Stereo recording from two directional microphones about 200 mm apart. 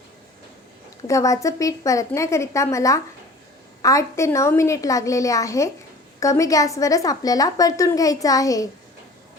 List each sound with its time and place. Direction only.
1.0 s a woman's voice: 15° left (ahead or behind)